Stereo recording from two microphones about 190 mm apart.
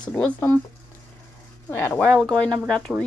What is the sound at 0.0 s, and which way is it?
Speech, 5° left (ahead or behind).